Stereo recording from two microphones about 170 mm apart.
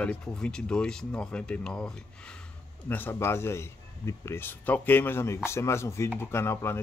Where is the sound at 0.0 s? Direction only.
5° left (ahead or behind).